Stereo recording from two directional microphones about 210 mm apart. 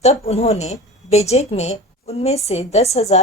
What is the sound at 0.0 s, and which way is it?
A woman's voice, 30° left (ahead or behind).